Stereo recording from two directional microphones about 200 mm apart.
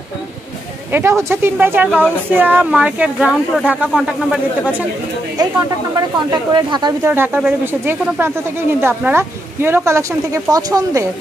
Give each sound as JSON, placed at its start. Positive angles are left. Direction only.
{"t": 0.9, "sound": "speech", "side_deg": -10}
{"t": 5.9, "sound": "speech", "side_deg": -20}
{"t": 7.1, "sound": "speech", "side_deg": -10}